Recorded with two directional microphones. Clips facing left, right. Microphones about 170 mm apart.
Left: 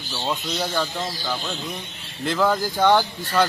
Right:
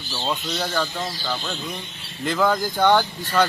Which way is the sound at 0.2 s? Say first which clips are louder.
Even; 10° left (ahead or behind).